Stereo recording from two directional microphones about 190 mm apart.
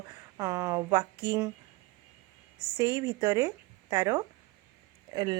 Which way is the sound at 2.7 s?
20° right (ahead or behind).